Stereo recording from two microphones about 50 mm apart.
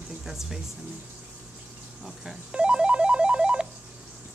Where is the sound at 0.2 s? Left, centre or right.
Centre.